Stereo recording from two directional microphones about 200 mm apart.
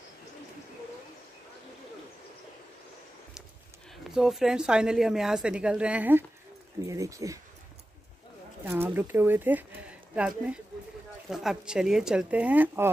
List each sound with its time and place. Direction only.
4.0 s a woman's voice: centre (ahead or behind)
8.6 s a woman's voice: 10° right (ahead or behind)